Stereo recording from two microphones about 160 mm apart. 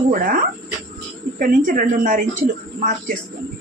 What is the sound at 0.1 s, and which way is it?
A woman's voice, 60° right (ahead or behind).